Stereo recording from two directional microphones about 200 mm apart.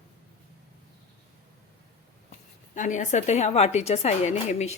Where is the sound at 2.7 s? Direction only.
40° left (ahead or behind).